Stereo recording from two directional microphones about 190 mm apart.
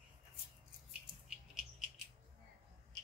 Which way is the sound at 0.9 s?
5° right (ahead or behind).